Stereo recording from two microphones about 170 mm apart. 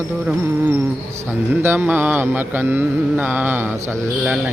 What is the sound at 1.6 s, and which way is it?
Mantra, 10° right (ahead or behind).